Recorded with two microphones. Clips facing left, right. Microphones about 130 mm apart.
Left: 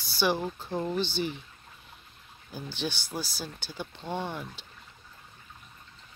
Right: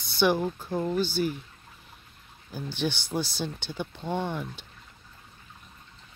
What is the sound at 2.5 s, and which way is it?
Speech, 15° right (ahead or behind).